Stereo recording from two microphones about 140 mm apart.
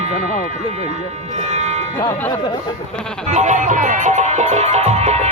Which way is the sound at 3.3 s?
55° right (ahead or behind).